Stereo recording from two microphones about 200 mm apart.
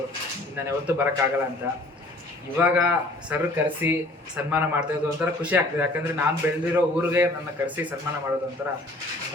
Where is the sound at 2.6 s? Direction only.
10° right (ahead or behind).